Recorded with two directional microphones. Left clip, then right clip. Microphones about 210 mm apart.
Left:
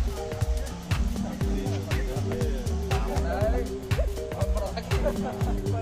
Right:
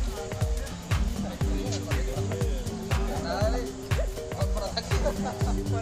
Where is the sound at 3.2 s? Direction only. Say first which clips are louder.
Even; 20° left (ahead or behind).